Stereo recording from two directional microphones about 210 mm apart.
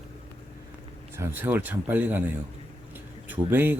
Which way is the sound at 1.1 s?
10° right (ahead or behind).